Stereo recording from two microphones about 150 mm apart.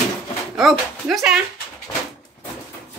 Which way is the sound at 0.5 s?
Centre (ahead or behind).